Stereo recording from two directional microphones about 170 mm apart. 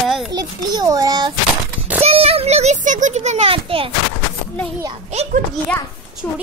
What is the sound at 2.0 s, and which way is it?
A child's voice, 35° right (ahead or behind).